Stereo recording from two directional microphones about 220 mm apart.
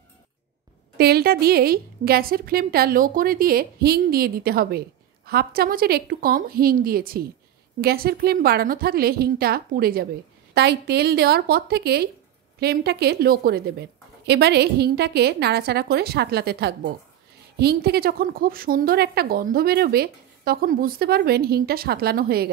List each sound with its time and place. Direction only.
0.9 s a woman's voice: 45° right (ahead or behind)